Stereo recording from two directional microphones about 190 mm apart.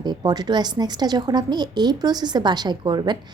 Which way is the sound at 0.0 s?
20° right (ahead or behind).